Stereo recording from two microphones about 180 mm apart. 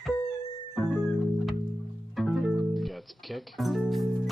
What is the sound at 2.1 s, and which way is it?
Music, centre (ahead or behind).